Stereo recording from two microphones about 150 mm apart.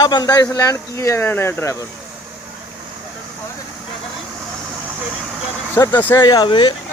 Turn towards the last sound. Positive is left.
turn(degrees=30)  # may be behind; listen again after turning